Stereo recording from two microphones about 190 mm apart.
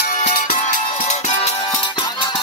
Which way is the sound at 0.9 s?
35° left (ahead or behind).